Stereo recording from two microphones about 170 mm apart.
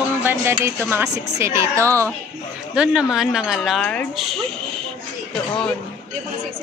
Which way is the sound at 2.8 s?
5° right (ahead or behind).